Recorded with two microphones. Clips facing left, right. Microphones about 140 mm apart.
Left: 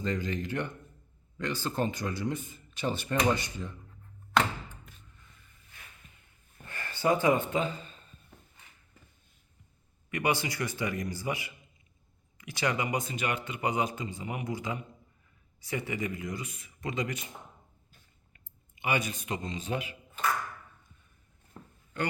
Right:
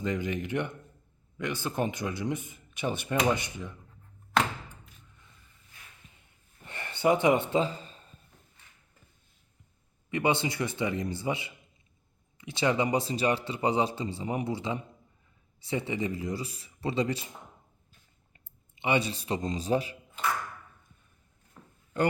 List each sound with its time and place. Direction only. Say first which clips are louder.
0.0 s speech: right 1 dB; 15° right (ahead or behind)
6.7 s speech: right 2 dB; 25° right (ahead or behind)
10.1 s a man's voice: right 3 dB; 25° right (ahead or behind)
18.8 s speech: right 3 dB; 25° right (ahead or behind)